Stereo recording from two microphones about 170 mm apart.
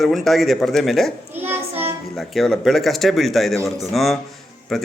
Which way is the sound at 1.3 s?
10° right (ahead or behind).